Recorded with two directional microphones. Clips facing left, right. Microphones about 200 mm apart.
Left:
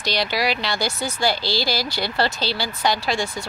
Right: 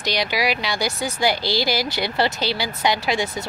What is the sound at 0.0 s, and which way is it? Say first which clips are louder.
A woman's voice: even; 15° right (ahead or behind).